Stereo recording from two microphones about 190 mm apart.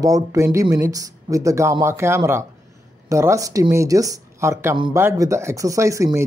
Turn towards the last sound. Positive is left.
turn(degrees=-15)  # may be behind; listen again after turning